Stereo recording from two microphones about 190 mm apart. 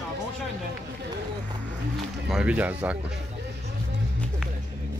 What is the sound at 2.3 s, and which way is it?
Speech, 5° right (ahead or behind).